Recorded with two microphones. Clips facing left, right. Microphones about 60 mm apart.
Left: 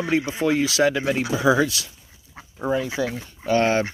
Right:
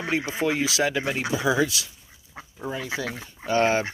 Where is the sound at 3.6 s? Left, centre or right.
Centre.